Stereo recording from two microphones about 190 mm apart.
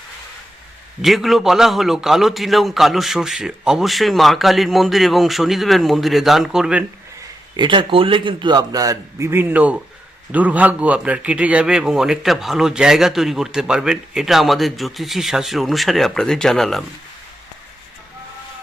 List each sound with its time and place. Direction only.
1.0 s a man's voice: centre (ahead or behind)
7.5 s a man's voice: 25° right (ahead or behind); by 16.8 s centre (ahead or behind)